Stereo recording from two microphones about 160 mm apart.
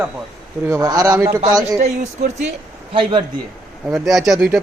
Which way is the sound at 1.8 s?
45° right (ahead or behind).